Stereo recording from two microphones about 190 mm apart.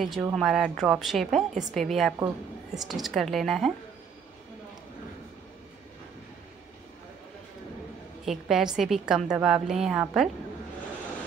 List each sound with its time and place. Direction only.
0.2 s a woman's voice: 5° right (ahead or behind)
2.1 s a woman's voice: 20° right (ahead or behind)
2.8 s a woman's voice: centre (ahead or behind)
8.3 s a woman's voice: centre (ahead or behind)